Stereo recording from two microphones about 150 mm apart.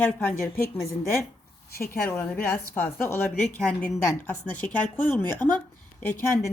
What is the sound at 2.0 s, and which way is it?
A woman's voice, 10° left (ahead or behind).